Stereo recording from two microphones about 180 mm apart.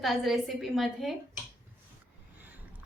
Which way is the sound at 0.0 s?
Centre (ahead or behind).